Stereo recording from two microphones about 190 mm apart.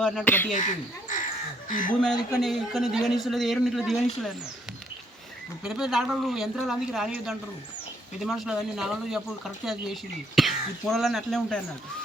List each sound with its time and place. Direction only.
0.0 s speech: 10° left (ahead or behind)
0.5 s speech: 40° left (ahead or behind)
2.4 s speech: centre (ahead or behind)
5.6 s speech: centre (ahead or behind)